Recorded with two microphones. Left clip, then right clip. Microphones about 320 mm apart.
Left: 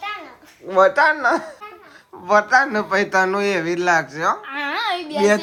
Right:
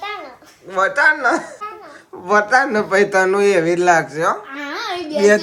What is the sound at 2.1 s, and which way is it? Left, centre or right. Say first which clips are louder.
Speech: right 1 dB; centre.